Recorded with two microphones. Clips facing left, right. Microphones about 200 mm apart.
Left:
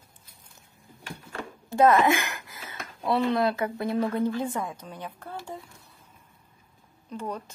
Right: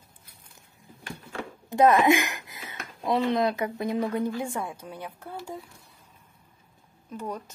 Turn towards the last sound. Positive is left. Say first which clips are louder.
# left 1 dB
turn(degrees=-5)  # may be behind; listen again after turning